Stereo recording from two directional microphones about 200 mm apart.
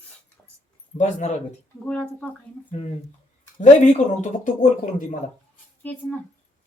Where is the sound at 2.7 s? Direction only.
35° left (ahead or behind).